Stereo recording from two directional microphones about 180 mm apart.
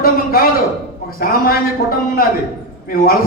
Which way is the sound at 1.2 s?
55° left (ahead or behind).